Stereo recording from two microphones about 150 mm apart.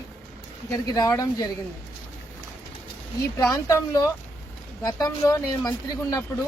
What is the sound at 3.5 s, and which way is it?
Speech, 20° left (ahead or behind).